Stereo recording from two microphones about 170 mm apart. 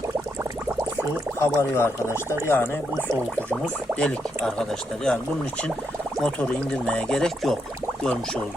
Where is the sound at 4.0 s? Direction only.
5° left (ahead or behind).